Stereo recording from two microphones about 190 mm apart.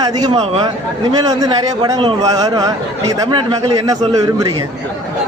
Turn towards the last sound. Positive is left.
turn(degrees=-20)  # may be behind; listen again after turning